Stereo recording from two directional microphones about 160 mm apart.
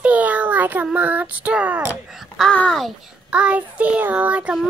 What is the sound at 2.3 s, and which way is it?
Speech, 5° left (ahead or behind).